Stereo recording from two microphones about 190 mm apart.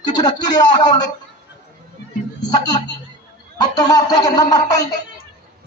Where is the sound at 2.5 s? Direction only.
20° left (ahead or behind).